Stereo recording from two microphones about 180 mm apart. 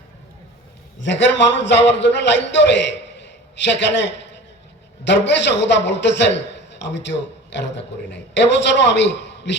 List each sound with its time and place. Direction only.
0.9 s a man's voice: 85° left